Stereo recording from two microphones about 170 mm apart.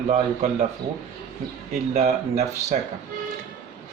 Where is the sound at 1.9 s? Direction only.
40° right (ahead or behind).